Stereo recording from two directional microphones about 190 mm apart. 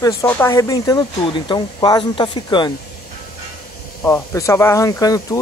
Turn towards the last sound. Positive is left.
turn(degrees=20)  # may be behind; listen again after turning